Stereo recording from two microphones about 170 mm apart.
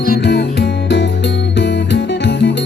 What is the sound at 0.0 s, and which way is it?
Music, 70° left (ahead or behind).